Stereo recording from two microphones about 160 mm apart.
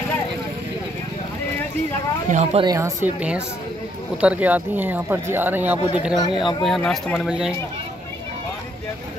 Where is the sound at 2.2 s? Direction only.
45° right (ahead or behind).